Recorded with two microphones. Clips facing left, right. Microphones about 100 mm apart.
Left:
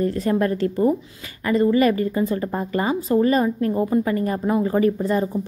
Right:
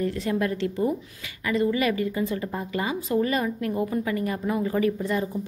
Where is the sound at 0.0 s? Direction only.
40° left (ahead or behind).